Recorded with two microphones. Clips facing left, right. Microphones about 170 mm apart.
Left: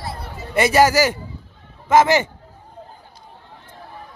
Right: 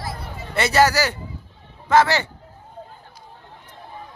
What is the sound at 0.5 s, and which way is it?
Speech, 15° left (ahead or behind).